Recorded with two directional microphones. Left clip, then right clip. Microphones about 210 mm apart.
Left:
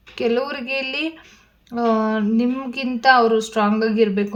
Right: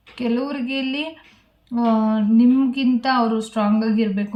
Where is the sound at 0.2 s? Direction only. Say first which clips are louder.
Left 3 dB; 45° left (ahead or behind).